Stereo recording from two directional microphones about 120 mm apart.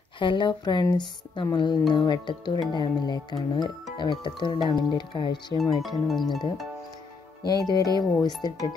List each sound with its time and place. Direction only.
0.2 s speech: 40° left (ahead or behind)
5.6 s speech: centre (ahead or behind)
7.4 s speech: 35° left (ahead or behind)